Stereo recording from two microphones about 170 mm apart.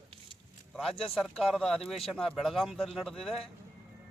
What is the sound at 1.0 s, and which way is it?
Speech, centre (ahead or behind).